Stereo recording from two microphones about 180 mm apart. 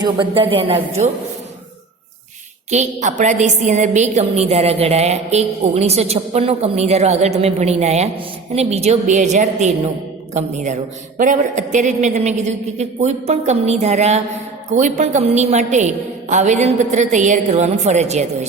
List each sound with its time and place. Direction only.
0.0 s a woman's voice: 25° right (ahead or behind)
2.6 s a woman's voice: 40° right (ahead or behind)